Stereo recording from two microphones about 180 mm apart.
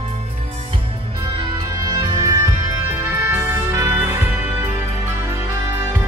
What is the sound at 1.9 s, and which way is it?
Music, 20° right (ahead or behind).